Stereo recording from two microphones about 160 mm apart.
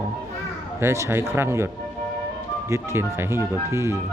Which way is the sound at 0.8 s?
15° right (ahead or behind).